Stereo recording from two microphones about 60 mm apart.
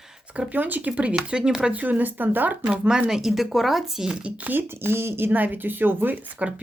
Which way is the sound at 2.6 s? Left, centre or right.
Centre.